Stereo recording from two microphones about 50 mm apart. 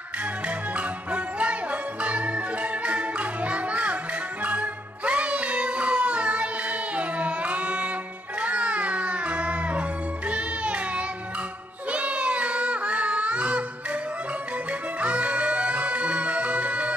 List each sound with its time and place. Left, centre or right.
0.7 s music: right
11.9 s child singing: right
14.7 s music: right